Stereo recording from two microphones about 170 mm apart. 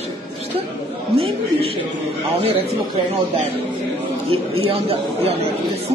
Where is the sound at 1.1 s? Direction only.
35° right (ahead or behind).